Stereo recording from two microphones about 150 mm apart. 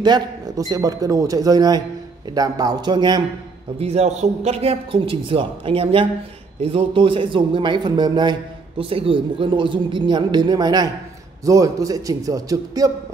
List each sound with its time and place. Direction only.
0.0 s speech: 25° right (ahead or behind)
3.8 s a man's voice: 45° right (ahead or behind); by 12.9 s 25° right (ahead or behind)